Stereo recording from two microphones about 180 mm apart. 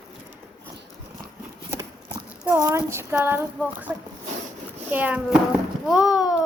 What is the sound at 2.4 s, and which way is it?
Speech, 15° right (ahead or behind).